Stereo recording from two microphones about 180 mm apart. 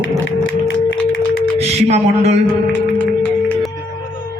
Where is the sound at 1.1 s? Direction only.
90° left.